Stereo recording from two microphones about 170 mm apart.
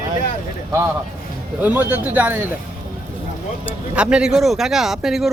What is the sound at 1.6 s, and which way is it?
Speech, 10° right (ahead or behind).